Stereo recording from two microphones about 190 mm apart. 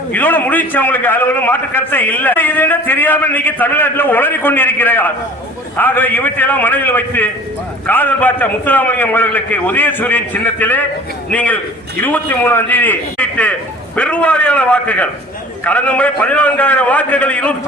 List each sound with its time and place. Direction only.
0.1 s a man's voice: 10° left (ahead or behind)